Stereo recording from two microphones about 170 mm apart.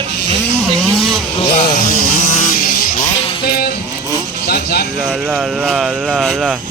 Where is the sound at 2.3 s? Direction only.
55° left (ahead or behind).